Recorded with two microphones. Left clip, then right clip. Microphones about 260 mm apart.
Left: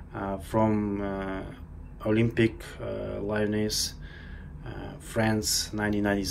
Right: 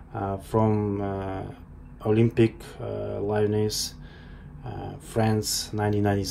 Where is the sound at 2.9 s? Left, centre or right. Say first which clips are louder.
Right 3 dB; left.